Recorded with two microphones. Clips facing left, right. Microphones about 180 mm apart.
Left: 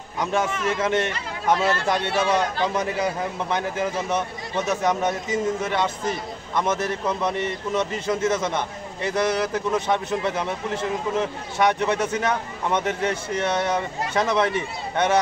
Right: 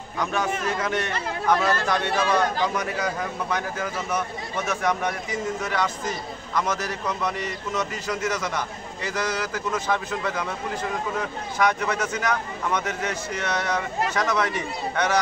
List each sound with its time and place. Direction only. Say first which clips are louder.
0.2 s a man's voice: left 2 dB; 25° left (ahead or behind)